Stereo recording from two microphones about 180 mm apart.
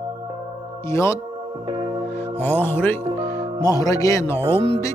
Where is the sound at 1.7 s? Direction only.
25° right (ahead or behind).